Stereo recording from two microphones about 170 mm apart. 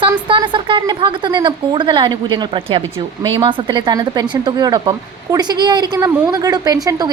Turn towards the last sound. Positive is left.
turn(degrees=-25)  # may be behind; listen again after turning